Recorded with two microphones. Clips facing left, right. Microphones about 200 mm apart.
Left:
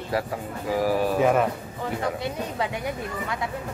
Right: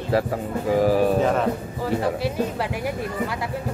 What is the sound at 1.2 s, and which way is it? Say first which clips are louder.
Speech: left 1 dB; 10° left (ahead or behind).